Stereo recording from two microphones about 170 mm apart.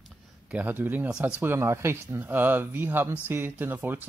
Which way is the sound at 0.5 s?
10° right (ahead or behind).